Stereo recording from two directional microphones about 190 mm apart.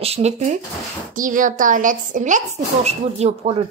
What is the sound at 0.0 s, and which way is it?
A woman's voice, 35° right (ahead or behind).